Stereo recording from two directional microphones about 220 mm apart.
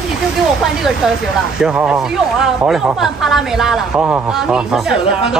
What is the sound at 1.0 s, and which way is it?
Speech, 5° right (ahead or behind).